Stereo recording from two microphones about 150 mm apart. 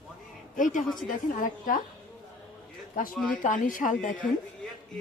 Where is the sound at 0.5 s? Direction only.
60° left (ahead or behind).